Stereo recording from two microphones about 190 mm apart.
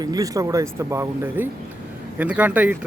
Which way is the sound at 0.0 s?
20° right (ahead or behind).